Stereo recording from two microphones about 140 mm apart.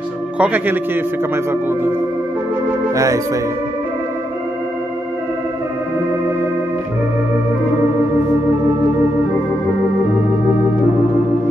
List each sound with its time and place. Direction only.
0.4 s a man's voice: 10° right (ahead or behind)